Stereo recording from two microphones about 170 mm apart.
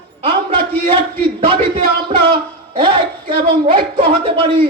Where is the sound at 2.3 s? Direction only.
30° right (ahead or behind).